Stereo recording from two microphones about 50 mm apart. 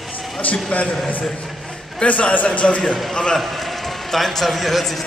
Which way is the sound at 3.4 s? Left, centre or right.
Centre.